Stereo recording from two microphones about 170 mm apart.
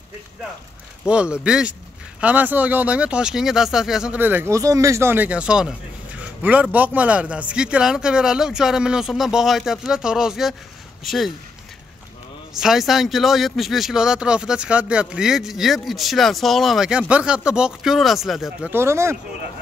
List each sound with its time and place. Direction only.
1.0 s speech: 5° right (ahead or behind)
12.5 s speech: centre (ahead or behind)
18.7 s speech: 15° right (ahead or behind)